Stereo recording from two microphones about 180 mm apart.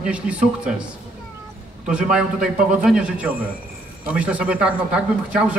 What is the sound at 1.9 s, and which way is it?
A man's voice, 5° right (ahead or behind).